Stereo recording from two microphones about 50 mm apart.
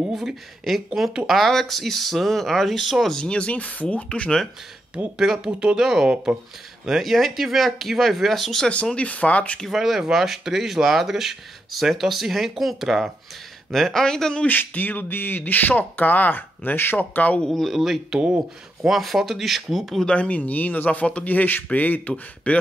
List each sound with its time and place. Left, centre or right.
0.1 s speech: centre
3.3 s speech: left
4.9 s speech: right
5.2 s speech: centre
8.9 s speech: left
9.7 s speech: centre
14.7 s speech: left
17.5 s speech: centre
18.1 s speech: centre
18.9 s speech: centre
20.1 s speech: left
22.1 s speech: left